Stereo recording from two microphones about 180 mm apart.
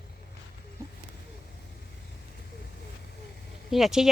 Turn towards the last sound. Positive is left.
turn(degrees=0)  # may be behind; listen again after turning